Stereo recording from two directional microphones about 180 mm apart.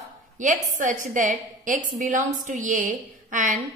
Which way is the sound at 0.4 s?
45° right (ahead or behind).